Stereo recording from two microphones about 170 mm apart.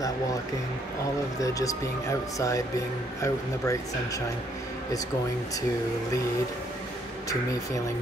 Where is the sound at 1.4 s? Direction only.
20° left (ahead or behind).